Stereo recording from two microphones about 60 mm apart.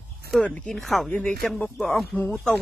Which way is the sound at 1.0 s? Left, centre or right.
Centre.